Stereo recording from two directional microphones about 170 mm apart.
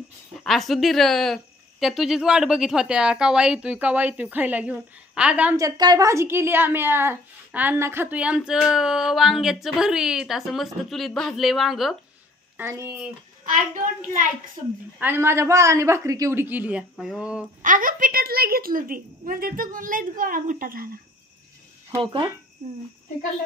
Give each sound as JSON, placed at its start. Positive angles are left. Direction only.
{"t": 0.4, "sound": "a woman's voice", "side_deg": 0}
{"t": 5.6, "sound": "a woman's voice", "side_deg": -20}
{"t": 12.5, "sound": "a man's voice", "side_deg": -15}
{"t": 15.0, "sound": "a man's voice", "side_deg": -15}
{"t": 17.6, "sound": "a woman's voice", "side_deg": -50}
{"t": 22.0, "sound": "speech", "side_deg": -30}
{"t": 22.6, "sound": "speech", "side_deg": -45}